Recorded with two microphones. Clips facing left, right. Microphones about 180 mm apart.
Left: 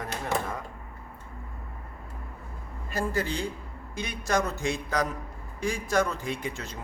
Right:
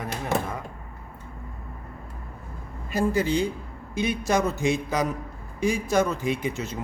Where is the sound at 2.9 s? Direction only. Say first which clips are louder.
Right 6 dB; 20° right (ahead or behind).